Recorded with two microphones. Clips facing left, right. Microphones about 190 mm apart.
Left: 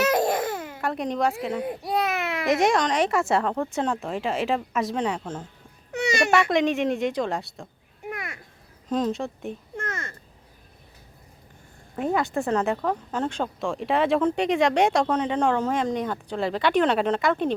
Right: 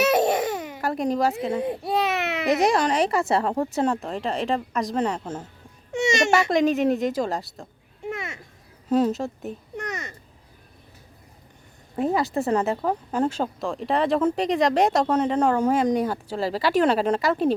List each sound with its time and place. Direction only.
0.0 s babbling: 20° right (ahead or behind)
0.8 s speech: 5° right (ahead or behind)
1.5 s babbling: 25° right (ahead or behind)
2.6 s speech: 5° right (ahead or behind)
5.9 s a child's voice: 25° right (ahead or behind)
6.5 s speech: centre (ahead or behind)
8.1 s a sound: 25° right (ahead or behind)
8.9 s speech: 10° right (ahead or behind)
9.7 s a sound: 20° right (ahead or behind)
12.0 s speech: centre (ahead or behind)